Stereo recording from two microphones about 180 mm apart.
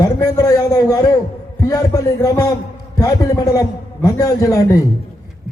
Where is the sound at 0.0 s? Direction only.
20° left (ahead or behind).